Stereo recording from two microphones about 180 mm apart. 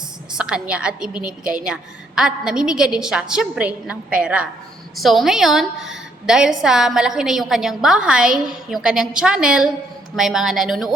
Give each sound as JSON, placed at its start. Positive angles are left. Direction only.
{"t": 0.3, "sound": "a woman's voice", "side_deg": -5}